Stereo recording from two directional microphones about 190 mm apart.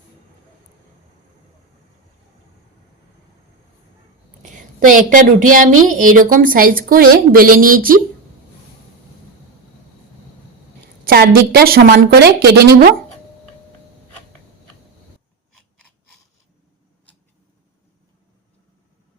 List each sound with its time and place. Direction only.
4.5 s a woman's voice: 45° right (ahead or behind)
11.0 s a woman's voice: 55° right (ahead or behind)